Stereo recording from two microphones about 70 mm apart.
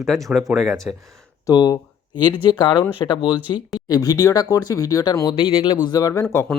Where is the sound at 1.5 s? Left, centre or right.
Left.